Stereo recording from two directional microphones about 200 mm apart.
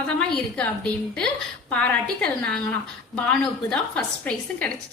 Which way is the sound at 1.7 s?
5° left (ahead or behind).